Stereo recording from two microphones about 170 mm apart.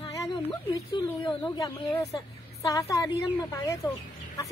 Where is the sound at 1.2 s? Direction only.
25° left (ahead or behind).